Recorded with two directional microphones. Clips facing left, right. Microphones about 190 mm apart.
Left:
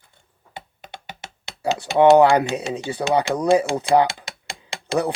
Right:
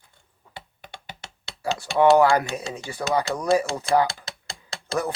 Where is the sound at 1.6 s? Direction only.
20° left (ahead or behind).